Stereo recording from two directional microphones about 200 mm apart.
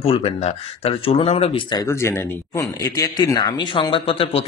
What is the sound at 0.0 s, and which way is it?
Speech, 30° left (ahead or behind).